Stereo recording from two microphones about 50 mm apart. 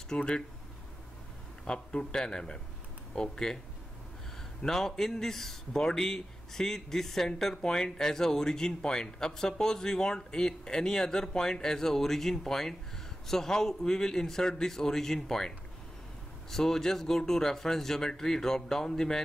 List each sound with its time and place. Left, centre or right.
0.1 s a man's voice: centre
1.6 s a man's voice: centre
4.6 s a man's voice: centre